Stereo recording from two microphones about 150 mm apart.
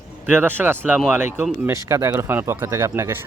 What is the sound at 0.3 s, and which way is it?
Speech, 15° right (ahead or behind).